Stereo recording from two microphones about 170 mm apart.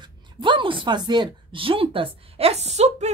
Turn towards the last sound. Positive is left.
turn(degrees=-40)  # may be behind; listen again after turning